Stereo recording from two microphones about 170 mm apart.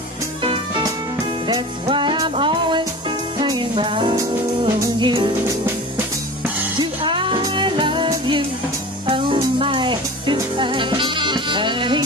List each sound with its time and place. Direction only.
1.5 s music: 30° right (ahead or behind)
6.8 s music: 30° right (ahead or behind)